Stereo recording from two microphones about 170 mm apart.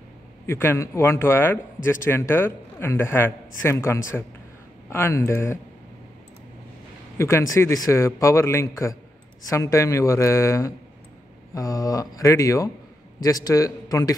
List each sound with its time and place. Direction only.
0.5 s a man's voice: 15° left (ahead or behind)
7.2 s a man's voice: 15° left (ahead or behind)